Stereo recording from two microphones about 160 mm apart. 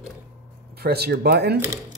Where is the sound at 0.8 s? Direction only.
80° right.